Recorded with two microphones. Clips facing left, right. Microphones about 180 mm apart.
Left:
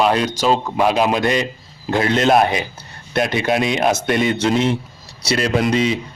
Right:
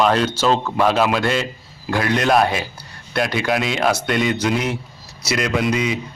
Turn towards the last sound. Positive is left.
turn(degrees=30)  # may be behind; listen again after turning